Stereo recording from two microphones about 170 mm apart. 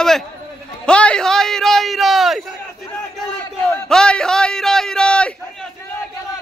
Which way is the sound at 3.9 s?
5° left (ahead or behind).